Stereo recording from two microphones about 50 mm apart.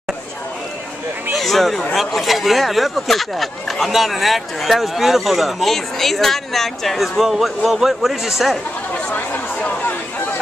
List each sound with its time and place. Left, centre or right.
1.3 s a man's voice: centre
8.9 s chatter: left